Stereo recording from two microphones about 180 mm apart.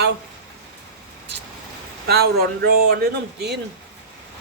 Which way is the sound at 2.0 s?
60° right (ahead or behind).